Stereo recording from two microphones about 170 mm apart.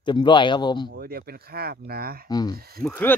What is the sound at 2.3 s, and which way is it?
Speech, 25° left (ahead or behind).